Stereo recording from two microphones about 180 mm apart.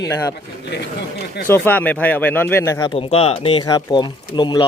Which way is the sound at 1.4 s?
10° left (ahead or behind).